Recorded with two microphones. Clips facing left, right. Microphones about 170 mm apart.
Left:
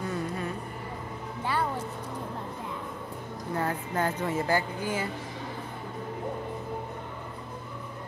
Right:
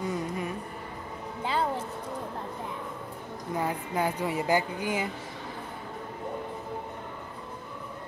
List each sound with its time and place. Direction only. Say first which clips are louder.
0.0 s a sound: right 1 dB; 15° right (ahead or behind)
1.4 s music: right 1 dB; 20° right (ahead or behind)
3.5 s speech: even; 10° right (ahead or behind)